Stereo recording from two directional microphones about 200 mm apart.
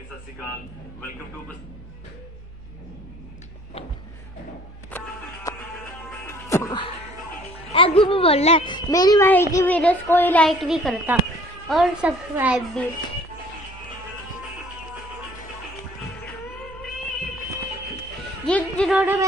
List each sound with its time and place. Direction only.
4.9 s music: 15° left (ahead or behind)
7.5 s music: 25° left (ahead or behind)
9.3 s a woman's voice: 15° left (ahead or behind); by 12.8 s 5° right (ahead or behind)
18.4 s a sound: 5° left (ahead or behind)
18.9 s a child's voice: 5° right (ahead or behind)